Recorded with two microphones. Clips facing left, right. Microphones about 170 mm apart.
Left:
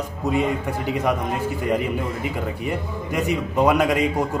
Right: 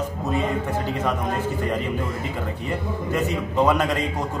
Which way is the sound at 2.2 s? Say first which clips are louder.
Left 2 dB; 15° left (ahead or behind).